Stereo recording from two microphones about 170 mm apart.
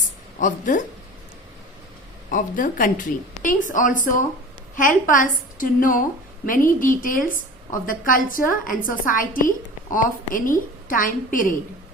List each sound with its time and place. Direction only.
0.3 s a woman's voice: 50° left (ahead or behind)
2.3 s a woman's voice: 55° left (ahead or behind)